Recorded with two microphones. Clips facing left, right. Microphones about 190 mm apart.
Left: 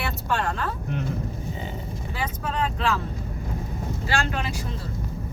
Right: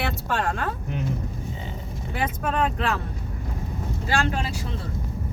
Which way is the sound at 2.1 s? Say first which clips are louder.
Right 4 dB; 55° right (ahead or behind).